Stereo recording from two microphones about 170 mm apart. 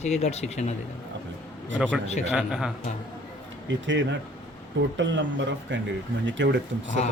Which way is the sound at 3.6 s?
90° right.